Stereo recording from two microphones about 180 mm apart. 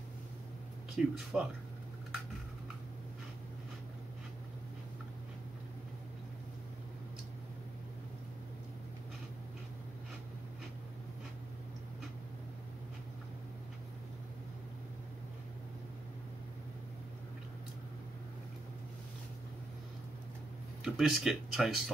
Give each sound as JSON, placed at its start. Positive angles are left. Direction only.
{"t": 1.0, "sound": "speech", "side_deg": -5}
{"t": 20.8, "sound": "speech", "side_deg": 0}